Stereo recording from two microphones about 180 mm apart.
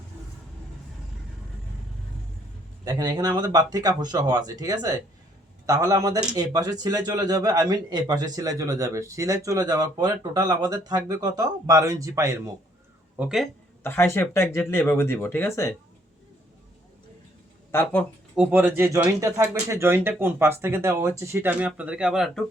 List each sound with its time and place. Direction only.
2.8 s speech: 20° right (ahead or behind)
13.1 s speech: centre (ahead or behind)
13.8 s speech: 15° left (ahead or behind)
17.7 s speech: 10° left (ahead or behind)
18.3 s speech: 10° right (ahead or behind)